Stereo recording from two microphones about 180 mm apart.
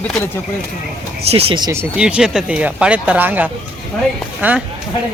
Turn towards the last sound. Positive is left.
turn(degrees=-10)  # may be behind; listen again after turning